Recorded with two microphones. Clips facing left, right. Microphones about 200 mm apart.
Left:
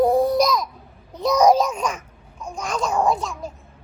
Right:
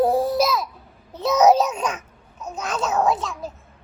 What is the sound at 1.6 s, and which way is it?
Babbling, 10° right (ahead or behind).